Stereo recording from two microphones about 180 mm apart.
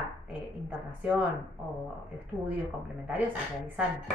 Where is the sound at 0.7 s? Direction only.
10° right (ahead or behind).